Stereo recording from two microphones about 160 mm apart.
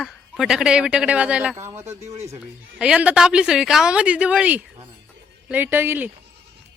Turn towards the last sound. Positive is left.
turn(degrees=-15)  # may be behind; listen again after turning